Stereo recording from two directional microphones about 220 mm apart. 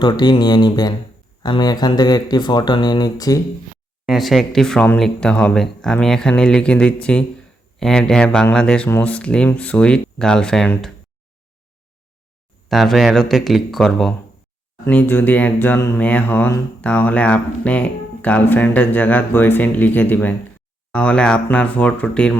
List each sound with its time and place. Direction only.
0.0 s speech: 20° left (ahead or behind)
4.0 s speech: centre (ahead or behind)
12.6 s speech: centre (ahead or behind)